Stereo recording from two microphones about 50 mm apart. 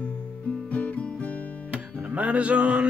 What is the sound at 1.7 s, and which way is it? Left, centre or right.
Music, right.